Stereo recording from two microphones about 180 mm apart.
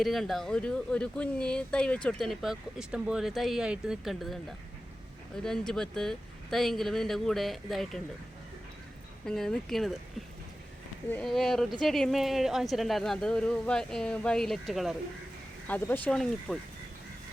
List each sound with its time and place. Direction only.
0.0 s speech: centre (ahead or behind)
9.2 s speech: 5° left (ahead or behind)